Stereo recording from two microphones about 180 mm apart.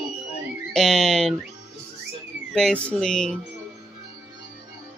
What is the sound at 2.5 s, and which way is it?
Speech, 5° left (ahead or behind).